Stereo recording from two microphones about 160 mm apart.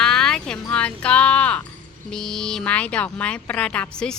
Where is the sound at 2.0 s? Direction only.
5° left (ahead or behind).